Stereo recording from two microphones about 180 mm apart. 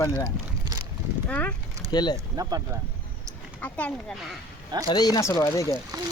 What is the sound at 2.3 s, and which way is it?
Speech, 20° right (ahead or behind).